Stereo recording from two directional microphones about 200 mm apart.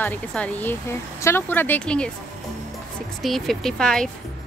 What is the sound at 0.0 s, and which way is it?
A woman's voice, 5° left (ahead or behind).